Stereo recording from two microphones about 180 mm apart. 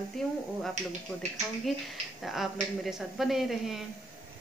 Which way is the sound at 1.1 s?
5° left (ahead or behind).